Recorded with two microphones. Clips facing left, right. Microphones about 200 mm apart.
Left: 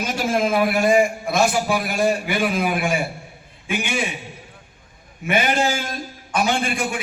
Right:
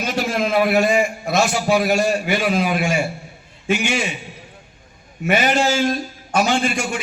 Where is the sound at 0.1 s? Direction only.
50° left (ahead or behind).